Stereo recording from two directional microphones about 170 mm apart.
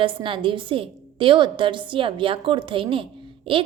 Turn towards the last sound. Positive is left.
turn(degrees=-30)  # may be behind; listen again after turning